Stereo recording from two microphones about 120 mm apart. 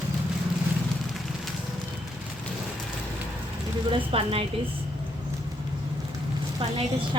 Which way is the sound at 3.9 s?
50° right (ahead or behind).